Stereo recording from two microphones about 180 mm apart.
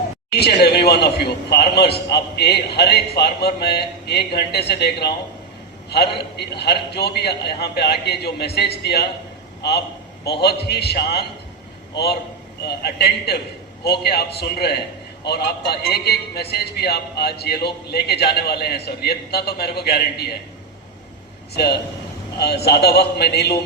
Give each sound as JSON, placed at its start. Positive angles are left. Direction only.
{"t": 0.3, "sound": "a man's voice", "side_deg": 65}
{"t": 10.4, "sound": "a man's voice", "side_deg": 65}
{"t": 21.5, "sound": "a man's voice", "side_deg": 65}